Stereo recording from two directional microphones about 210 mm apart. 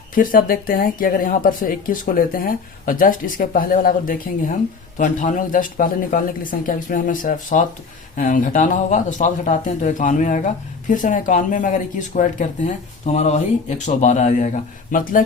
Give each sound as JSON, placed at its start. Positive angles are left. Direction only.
{"t": 0.1, "sound": "speech", "side_deg": 40}